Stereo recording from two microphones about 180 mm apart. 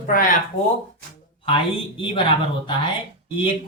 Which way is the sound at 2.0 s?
30° left (ahead or behind).